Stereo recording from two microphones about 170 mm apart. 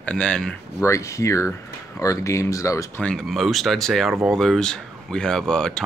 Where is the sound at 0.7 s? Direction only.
15° left (ahead or behind).